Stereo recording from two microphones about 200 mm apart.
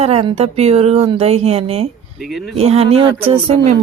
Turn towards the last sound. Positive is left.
turn(degrees=-30)  # may be behind; listen again after turning